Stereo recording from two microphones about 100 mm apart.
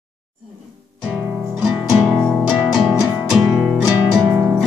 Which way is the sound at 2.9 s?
5° right (ahead or behind).